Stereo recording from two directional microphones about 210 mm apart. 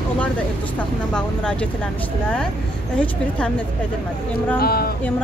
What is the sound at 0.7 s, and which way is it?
Speech, 5° left (ahead or behind).